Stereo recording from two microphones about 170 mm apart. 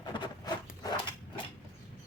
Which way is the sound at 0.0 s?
25° left (ahead or behind).